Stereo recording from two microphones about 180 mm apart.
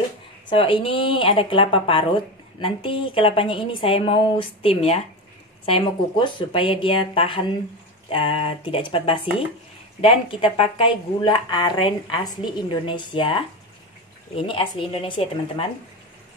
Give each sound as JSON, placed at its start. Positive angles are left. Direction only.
{"t": 0.5, "sound": "speech", "side_deg": 30}